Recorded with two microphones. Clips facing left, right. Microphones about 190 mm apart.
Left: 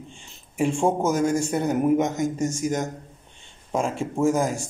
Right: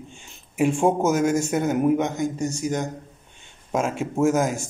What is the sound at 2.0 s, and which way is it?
Speech, 45° left (ahead or behind).